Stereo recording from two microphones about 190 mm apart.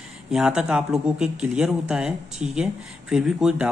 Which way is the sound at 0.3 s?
5° right (ahead or behind).